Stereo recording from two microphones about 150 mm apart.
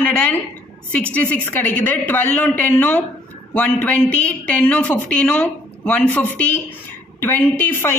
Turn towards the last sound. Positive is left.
turn(degrees=15)  # may be behind; listen again after turning